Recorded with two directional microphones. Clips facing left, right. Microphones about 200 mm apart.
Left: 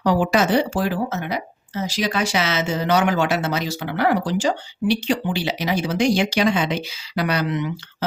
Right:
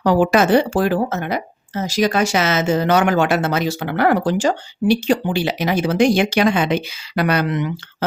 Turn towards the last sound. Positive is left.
turn(degrees=-55)  # may be behind; listen again after turning